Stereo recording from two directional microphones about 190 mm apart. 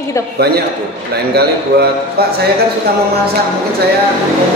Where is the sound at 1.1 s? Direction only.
55° right (ahead or behind).